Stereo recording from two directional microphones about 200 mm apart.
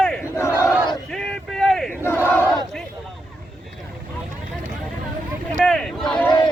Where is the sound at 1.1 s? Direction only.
5° left (ahead or behind).